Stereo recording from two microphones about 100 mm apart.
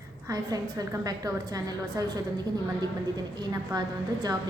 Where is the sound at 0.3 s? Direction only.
40° right (ahead or behind).